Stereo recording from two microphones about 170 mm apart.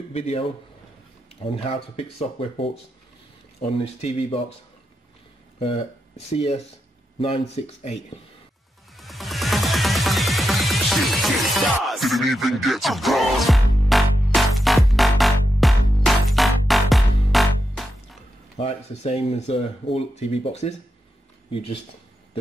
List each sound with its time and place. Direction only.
0.1 s speech: 40° left (ahead or behind)
5.6 s speech: 35° left (ahead or behind)
8.9 s music: centre (ahead or behind)
18.6 s speech: 40° left (ahead or behind)